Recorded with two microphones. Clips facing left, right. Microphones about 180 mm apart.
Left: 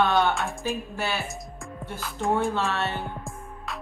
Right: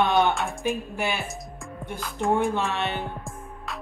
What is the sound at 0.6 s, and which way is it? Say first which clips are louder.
Speech: right 2 dB; 15° right (ahead or behind).